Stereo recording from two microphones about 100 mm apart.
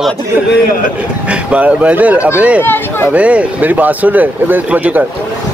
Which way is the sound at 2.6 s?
20° left (ahead or behind).